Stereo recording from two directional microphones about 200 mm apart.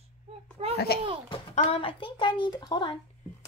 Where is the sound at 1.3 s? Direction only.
30° left (ahead or behind).